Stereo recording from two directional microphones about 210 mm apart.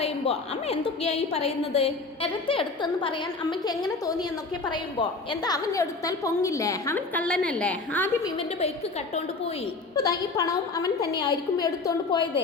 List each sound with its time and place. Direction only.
0.0 s a woman's voice: 30° left (ahead or behind); by 8.3 s 10° left (ahead or behind)
9.9 s a woman's voice: 15° left (ahead or behind)